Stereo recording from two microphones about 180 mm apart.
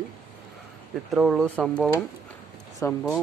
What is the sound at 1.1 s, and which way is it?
Speech, centre (ahead or behind).